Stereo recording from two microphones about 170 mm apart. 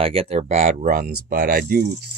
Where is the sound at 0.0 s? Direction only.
35° right (ahead or behind).